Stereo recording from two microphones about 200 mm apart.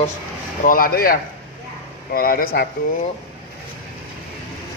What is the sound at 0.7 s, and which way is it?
Speech, 45° left (ahead or behind).